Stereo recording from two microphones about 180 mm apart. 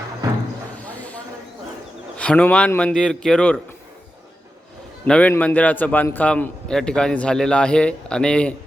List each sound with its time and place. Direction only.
0.8 s a sound: 10° left (ahead or behind)
2.1 s a man's voice: 5° left (ahead or behind)
5.0 s a man's voice: 5° left (ahead or behind)